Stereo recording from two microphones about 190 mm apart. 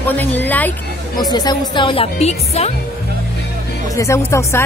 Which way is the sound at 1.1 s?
20° left (ahead or behind).